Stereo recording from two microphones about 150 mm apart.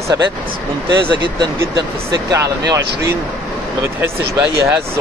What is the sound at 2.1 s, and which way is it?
Speech, 20° right (ahead or behind).